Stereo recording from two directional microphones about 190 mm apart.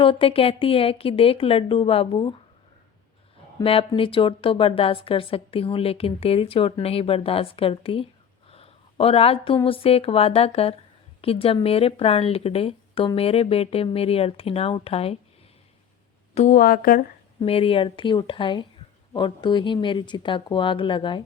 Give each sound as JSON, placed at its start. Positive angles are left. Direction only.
{"t": 0.0, "sound": "a woman's voice", "side_deg": 30}
{"t": 3.6, "sound": "a woman's voice", "side_deg": 30}
{"t": 16.3, "sound": "speech", "side_deg": 40}
{"t": 17.4, "sound": "a woman's voice", "side_deg": 30}